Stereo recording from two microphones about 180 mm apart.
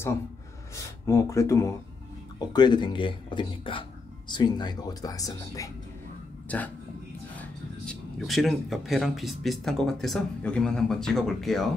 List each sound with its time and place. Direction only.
0.7 s speech: 15° left (ahead or behind)
6.5 s speech: 10° left (ahead or behind)